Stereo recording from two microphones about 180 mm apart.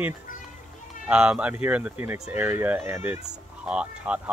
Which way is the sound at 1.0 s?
5° right (ahead or behind).